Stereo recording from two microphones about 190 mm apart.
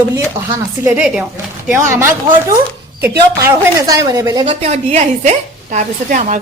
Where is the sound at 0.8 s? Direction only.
10° right (ahead or behind).